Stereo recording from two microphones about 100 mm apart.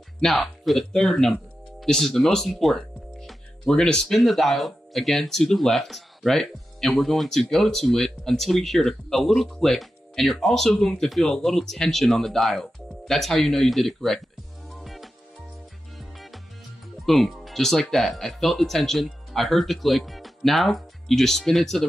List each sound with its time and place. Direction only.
0.2 s speech: centre (ahead or behind)
14.7 s music: centre (ahead or behind)
17.0 s speech: centre (ahead or behind)